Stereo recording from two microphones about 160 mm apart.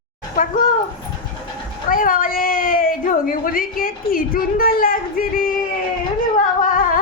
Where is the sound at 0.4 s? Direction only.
55° left (ahead or behind).